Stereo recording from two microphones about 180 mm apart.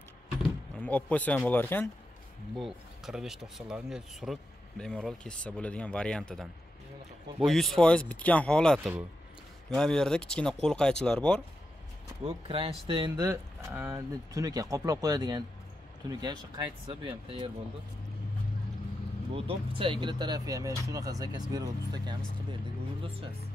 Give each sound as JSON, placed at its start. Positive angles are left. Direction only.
{"t": 0.7, "sound": "speech", "side_deg": 5}
{"t": 2.5, "sound": "speech", "side_deg": 0}
{"t": 12.3, "sound": "speech", "side_deg": -30}
{"t": 13.2, "sound": "cattle", "side_deg": -15}
{"t": 13.7, "sound": "speech", "side_deg": -15}
{"t": 19.3, "sound": "speech", "side_deg": -30}